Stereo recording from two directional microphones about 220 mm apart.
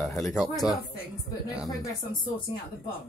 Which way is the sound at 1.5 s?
15° left (ahead or behind).